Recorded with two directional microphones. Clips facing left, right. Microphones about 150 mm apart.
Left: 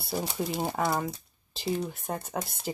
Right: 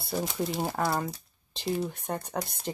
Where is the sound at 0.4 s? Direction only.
Centre (ahead or behind).